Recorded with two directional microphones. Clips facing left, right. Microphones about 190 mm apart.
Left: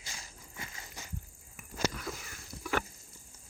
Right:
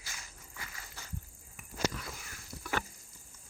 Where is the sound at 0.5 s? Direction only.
25° left (ahead or behind).